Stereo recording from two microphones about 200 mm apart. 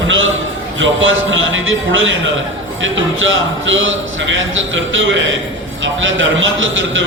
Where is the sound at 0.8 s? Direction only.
75° right (ahead or behind).